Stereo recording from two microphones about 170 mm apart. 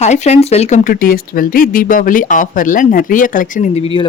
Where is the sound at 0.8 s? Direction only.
55° left (ahead or behind).